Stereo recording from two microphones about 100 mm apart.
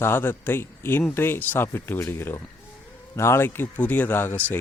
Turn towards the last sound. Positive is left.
turn(degrees=20)  # may be behind; listen again after turning